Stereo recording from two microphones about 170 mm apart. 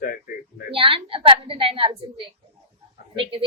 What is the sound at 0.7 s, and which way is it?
A woman's voice, 30° right (ahead or behind).